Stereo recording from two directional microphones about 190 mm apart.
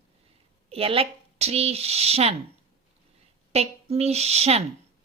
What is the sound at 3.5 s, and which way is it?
Speech, 35° right (ahead or behind).